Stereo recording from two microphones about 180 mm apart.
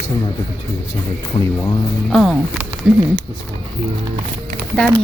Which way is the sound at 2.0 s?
Centre (ahead or behind).